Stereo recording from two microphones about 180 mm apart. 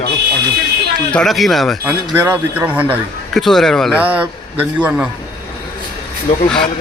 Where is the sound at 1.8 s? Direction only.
15° right (ahead or behind).